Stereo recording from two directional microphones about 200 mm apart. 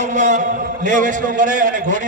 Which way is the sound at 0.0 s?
35° right (ahead or behind).